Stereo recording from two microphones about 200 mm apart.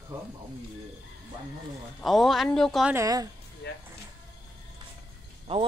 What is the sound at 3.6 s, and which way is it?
Vehicle, 55° left (ahead or behind).